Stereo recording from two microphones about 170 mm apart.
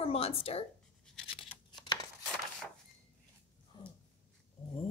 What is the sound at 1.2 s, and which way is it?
Scissors, 30° left (ahead or behind).